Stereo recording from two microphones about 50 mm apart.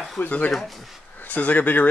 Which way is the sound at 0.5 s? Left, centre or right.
Centre.